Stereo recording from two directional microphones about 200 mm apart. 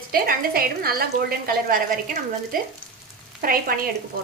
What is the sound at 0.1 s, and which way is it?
A woman's voice, 50° right (ahead or behind).